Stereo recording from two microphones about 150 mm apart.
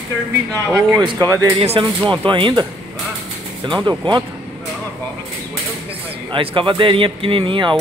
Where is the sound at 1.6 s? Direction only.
35° right (ahead or behind).